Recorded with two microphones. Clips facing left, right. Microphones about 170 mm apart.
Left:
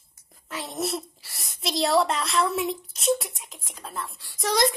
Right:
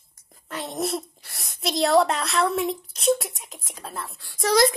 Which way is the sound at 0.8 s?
50° right (ahead or behind).